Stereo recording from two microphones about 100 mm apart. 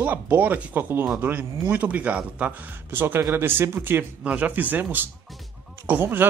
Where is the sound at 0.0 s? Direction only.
15° right (ahead or behind).